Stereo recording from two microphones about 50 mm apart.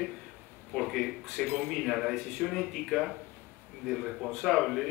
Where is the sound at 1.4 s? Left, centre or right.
Left.